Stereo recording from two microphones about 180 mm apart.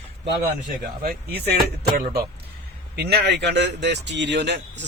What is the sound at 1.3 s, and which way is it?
A man's voice, 65° right (ahead or behind).